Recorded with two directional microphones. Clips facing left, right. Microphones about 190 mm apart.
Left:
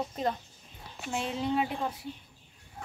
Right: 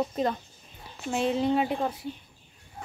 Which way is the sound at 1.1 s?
35° right (ahead or behind).